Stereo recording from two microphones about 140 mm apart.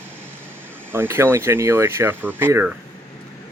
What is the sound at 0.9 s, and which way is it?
Speech, 15° right (ahead or behind).